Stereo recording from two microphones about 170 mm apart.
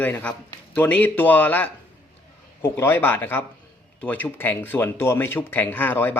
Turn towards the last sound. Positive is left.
turn(degrees=10)  # may be behind; listen again after turning